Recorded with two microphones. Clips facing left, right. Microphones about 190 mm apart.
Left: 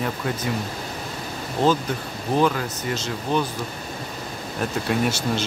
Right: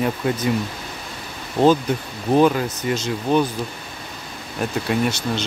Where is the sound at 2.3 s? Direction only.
20° right (ahead or behind).